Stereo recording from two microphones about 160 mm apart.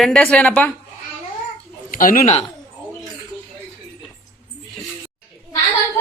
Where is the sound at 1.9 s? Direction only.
60° left (ahead or behind).